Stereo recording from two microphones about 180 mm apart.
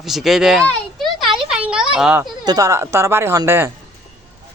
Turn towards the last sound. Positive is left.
turn(degrees=-15)  # may be behind; listen again after turning